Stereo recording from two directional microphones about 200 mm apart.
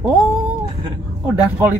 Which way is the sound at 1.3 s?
10° right (ahead or behind).